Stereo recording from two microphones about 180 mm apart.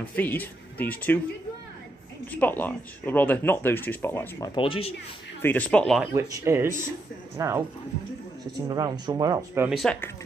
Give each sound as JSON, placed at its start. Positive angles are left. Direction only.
{"t": 0.1, "sound": "speech", "side_deg": 10}
{"t": 2.3, "sound": "speech", "side_deg": 10}
{"t": 4.6, "sound": "speech", "side_deg": 30}
{"t": 5.4, "sound": "speech", "side_deg": 10}
{"t": 6.1, "sound": "speech", "side_deg": -15}
{"t": 8.6, "sound": "speech", "side_deg": -20}
{"t": 9.7, "sound": "speech", "side_deg": 0}